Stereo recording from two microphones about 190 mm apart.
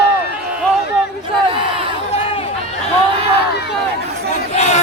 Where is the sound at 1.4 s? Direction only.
25° right (ahead or behind).